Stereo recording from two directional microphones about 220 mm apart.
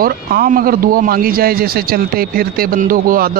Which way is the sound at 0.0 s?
40° right (ahead or behind).